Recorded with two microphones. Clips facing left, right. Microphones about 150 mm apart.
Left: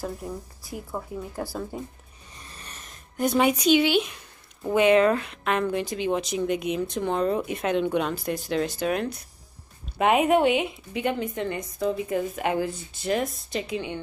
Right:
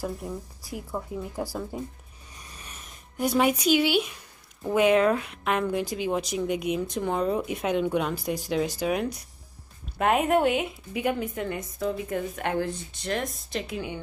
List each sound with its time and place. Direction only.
0.0 s speech: 5° right (ahead or behind)
9.9 s speech: 5° left (ahead or behind)